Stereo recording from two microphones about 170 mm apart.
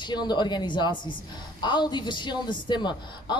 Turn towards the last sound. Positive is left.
turn(degrees=25)  # may be behind; listen again after turning